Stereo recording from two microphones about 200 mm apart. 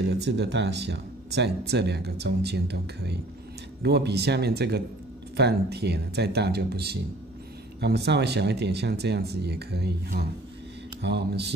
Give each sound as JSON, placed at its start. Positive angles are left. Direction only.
{"t": 0.0, "sound": "speech", "side_deg": -55}